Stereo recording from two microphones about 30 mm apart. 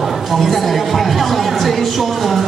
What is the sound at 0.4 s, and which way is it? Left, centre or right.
A woman's voice, centre.